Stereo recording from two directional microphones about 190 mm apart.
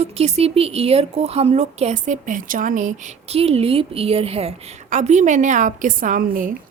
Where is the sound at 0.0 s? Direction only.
35° right (ahead or behind).